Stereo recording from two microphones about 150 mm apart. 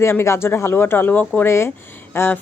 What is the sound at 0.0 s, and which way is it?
Speech, 15° left (ahead or behind).